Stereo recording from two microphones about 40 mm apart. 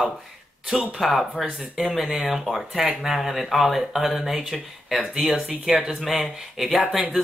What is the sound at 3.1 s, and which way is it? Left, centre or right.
Speech, centre.